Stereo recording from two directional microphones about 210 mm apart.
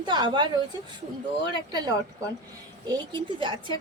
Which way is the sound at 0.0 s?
20° right (ahead or behind).